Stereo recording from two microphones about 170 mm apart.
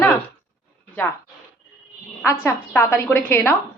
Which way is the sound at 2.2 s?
15° left (ahead or behind).